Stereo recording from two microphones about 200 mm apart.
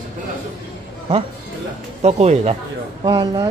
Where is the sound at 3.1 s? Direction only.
15° right (ahead or behind).